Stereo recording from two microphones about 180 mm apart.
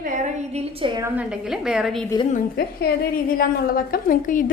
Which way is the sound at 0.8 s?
20° right (ahead or behind).